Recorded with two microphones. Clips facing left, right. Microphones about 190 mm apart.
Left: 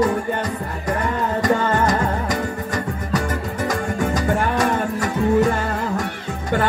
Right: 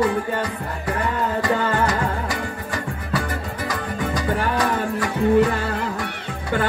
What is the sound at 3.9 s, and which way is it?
Music, 45° left (ahead or behind).